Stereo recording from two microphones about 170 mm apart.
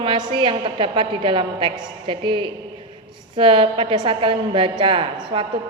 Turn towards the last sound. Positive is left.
turn(degrees=-30)  # may be behind; listen again after turning